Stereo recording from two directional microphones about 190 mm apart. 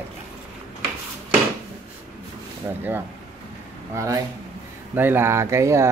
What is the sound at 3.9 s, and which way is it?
Speech, 15° right (ahead or behind).